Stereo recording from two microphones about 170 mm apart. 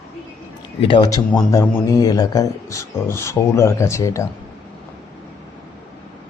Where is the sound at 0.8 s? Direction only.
30° left (ahead or behind).